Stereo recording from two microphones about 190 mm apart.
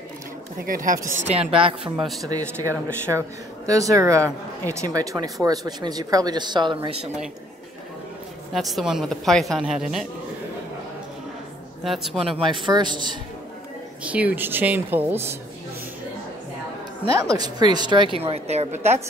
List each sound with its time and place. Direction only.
0.7 s speech: 45° right (ahead or behind)
1.2 s a woman's voice: 30° right (ahead or behind)
8.5 s a woman's voice: centre (ahead or behind)
11.8 s a woman's voice: centre (ahead or behind)
12.2 s a woman's voice: 30° right (ahead or behind)
14.0 s speech: 5° right (ahead or behind)
17.3 s a woman's voice: 20° right (ahead or behind)
18.8 s speech: 10° right (ahead or behind)